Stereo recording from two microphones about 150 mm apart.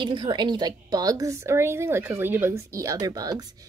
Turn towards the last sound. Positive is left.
turn(degrees=-25)  # may be behind; listen again after turning